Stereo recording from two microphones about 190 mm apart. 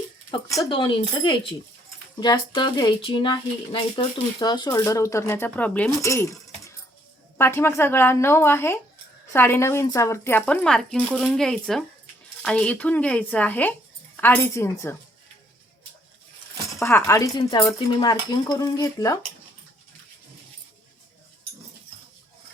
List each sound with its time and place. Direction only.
0.3 s speech: 20° left (ahead or behind)
7.3 s speech: 10° left (ahead or behind)
16.8 s speech: 15° left (ahead or behind)